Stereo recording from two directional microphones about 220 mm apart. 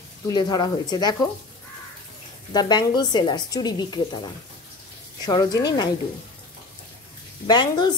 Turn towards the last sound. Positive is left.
turn(degrees=20)  # may be behind; listen again after turning